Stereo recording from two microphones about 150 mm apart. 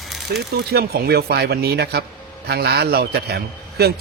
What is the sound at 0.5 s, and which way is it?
A man's voice, 90° right.